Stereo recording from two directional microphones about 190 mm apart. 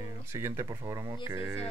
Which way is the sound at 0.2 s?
15° right (ahead or behind).